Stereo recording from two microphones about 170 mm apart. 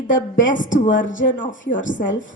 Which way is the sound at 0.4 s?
50° left (ahead or behind).